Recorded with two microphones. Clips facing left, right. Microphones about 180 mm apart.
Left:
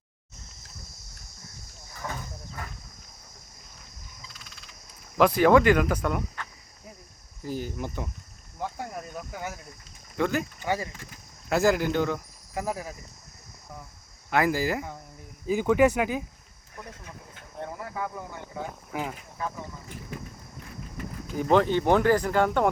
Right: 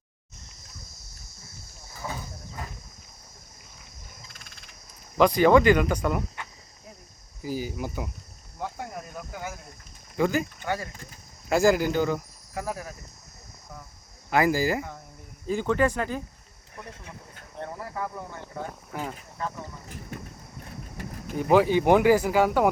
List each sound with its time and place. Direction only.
2.0 s a sound: 10° right (ahead or behind)
5.1 s speech: centre (ahead or behind)
7.4 s speech: 5° right (ahead or behind)
10.6 s speech: 15° left (ahead or behind)
11.4 s speech: centre (ahead or behind)
12.5 s speech: 15° left (ahead or behind)
14.3 s speech: centre (ahead or behind)
16.8 s speech: 25° right (ahead or behind)
17.6 s speech: centre (ahead or behind)
21.4 s speech: 10° right (ahead or behind)